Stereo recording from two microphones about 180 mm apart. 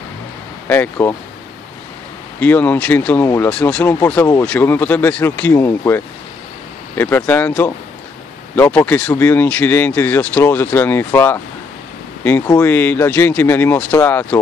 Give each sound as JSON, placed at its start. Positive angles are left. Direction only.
{"t": 0.7, "sound": "speech", "side_deg": 10}
{"t": 2.4, "sound": "speech", "side_deg": 10}